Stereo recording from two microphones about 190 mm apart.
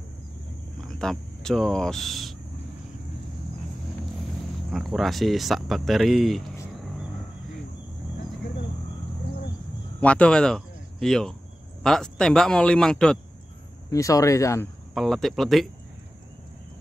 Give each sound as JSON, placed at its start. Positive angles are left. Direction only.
{"t": 0.7, "sound": "speech", "side_deg": 0}
{"t": 4.6, "sound": "speech", "side_deg": 0}
{"t": 9.9, "sound": "speech", "side_deg": 5}
{"t": 13.8, "sound": "speech", "side_deg": 15}
{"t": 15.0, "sound": "speech", "side_deg": 0}